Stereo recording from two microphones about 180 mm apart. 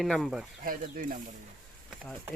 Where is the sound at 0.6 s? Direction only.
50° right (ahead or behind).